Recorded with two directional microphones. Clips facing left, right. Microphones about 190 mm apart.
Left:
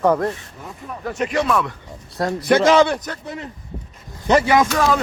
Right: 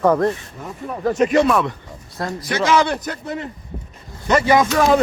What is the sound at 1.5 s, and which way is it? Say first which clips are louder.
Speech: right 2 dB; 25° right (ahead or behind).